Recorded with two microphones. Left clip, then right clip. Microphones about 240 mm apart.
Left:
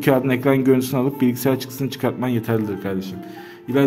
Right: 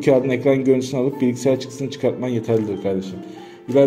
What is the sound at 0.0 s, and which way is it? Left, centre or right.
A man's voice, left.